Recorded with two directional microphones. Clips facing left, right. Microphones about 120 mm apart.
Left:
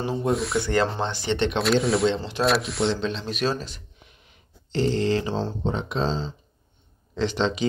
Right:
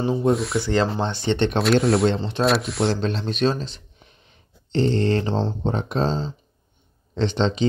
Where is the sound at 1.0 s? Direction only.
35° right (ahead or behind).